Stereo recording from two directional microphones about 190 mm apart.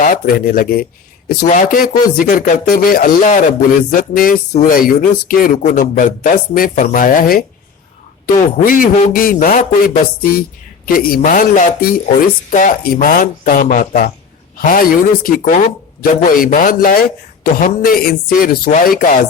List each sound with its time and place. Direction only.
0.0 s speech: 45° left (ahead or behind)